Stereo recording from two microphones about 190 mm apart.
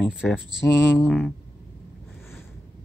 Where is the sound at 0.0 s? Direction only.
Centre (ahead or behind).